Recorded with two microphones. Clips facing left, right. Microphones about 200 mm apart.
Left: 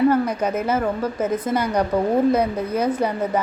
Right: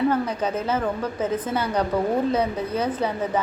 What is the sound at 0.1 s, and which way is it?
A woman's voice, 10° left (ahead or behind).